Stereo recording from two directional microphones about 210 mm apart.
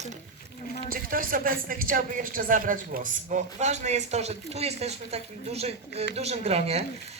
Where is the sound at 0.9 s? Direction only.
40° right (ahead or behind).